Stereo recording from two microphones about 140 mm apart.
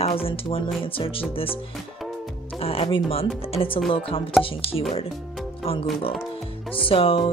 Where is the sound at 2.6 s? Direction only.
45° left (ahead or behind).